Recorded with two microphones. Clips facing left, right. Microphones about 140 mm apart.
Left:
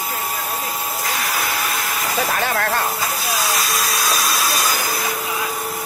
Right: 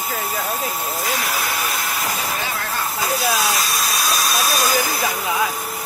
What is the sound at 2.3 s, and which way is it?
Hiss, 60° left (ahead or behind).